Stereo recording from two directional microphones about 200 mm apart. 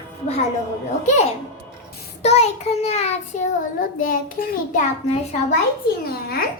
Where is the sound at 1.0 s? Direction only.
35° left (ahead or behind).